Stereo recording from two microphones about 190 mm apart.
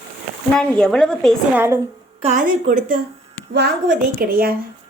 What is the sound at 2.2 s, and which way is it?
Speech, 40° right (ahead or behind).